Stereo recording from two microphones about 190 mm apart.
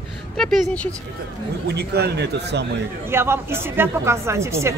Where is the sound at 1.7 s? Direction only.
60° right (ahead or behind).